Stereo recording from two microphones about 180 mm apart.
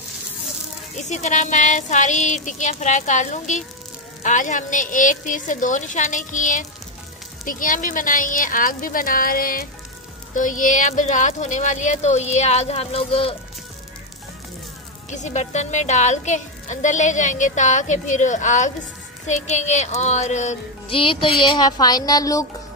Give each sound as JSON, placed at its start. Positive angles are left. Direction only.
{"t": 1.0, "sound": "a woman's voice", "side_deg": 40}
{"t": 15.0, "sound": "a woman's voice", "side_deg": 40}